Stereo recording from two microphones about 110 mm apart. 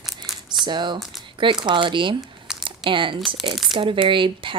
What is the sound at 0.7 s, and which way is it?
A woman's voice, 45° right (ahead or behind).